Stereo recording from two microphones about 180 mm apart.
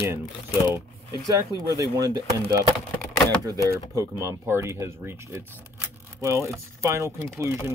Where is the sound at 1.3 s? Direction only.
20° right (ahead or behind).